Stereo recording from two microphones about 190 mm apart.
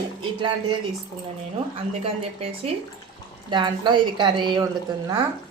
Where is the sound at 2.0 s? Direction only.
30° right (ahead or behind).